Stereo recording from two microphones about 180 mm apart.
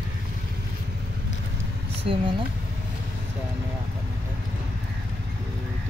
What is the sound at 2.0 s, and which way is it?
Speech, 30° right (ahead or behind).